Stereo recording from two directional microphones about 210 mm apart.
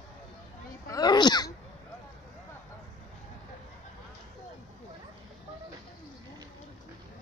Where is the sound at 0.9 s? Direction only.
20° left (ahead or behind).